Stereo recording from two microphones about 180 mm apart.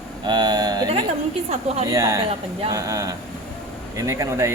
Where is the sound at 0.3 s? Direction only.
25° right (ahead or behind).